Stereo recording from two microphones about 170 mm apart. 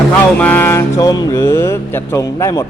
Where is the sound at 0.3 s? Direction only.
10° left (ahead or behind).